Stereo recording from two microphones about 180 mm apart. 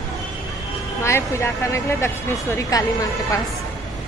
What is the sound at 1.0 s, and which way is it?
A woman's voice, 15° left (ahead or behind).